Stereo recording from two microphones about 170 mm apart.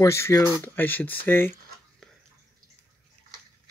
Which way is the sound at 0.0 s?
15° left (ahead or behind).